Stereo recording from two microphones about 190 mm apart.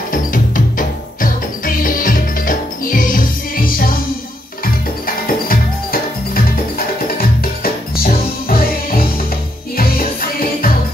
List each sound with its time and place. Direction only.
0.1 s music: 45° left (ahead or behind)
5.0 s music: 50° left (ahead or behind)